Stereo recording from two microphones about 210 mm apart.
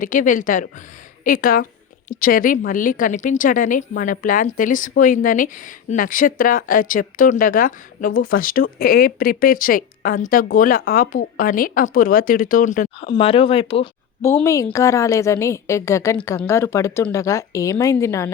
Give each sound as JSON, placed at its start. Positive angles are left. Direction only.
{"t": 0.0, "sound": "a woman's voice", "side_deg": 40}
{"t": 13.0, "sound": "speech", "side_deg": 25}
{"t": 14.2, "sound": "a woman's voice", "side_deg": 10}